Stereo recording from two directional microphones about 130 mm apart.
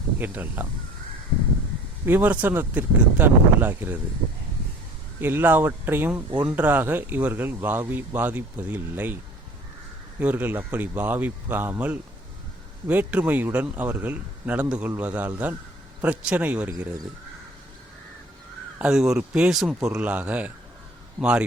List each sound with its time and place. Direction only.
0.2 s speech: 15° right (ahead or behind)
2.0 s speech: 15° right (ahead or behind)
5.2 s speech: 15° right (ahead or behind)
10.2 s speech: 15° right (ahead or behind)
18.8 s speech: 5° right (ahead or behind)